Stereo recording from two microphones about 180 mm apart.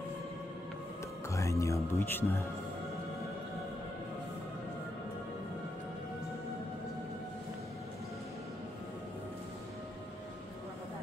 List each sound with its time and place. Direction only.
1.3 s speech: 15° left (ahead or behind)